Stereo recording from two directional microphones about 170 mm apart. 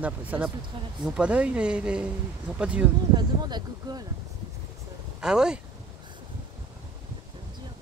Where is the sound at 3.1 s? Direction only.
25° right (ahead or behind).